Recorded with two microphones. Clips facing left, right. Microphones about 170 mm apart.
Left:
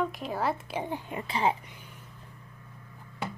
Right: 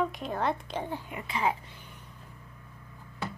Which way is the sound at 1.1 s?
30° left (ahead or behind).